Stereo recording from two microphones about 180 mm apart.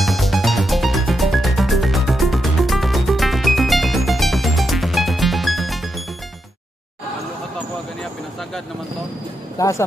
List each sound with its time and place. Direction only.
0.0 s music: centre (ahead or behind)
9.6 s speech: 15° left (ahead or behind)